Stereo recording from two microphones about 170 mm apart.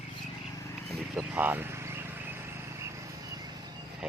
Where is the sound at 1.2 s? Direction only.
10° right (ahead or behind).